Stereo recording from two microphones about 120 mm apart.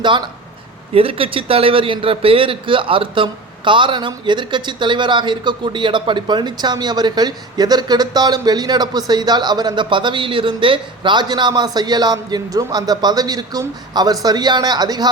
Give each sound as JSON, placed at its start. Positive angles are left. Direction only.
{"t": 0.9, "sound": "a man's voice", "side_deg": -50}